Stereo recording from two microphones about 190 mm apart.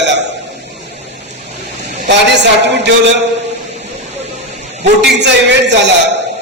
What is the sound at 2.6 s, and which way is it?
Speech, 65° right (ahead or behind).